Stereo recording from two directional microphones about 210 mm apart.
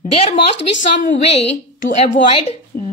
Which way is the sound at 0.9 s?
35° left (ahead or behind).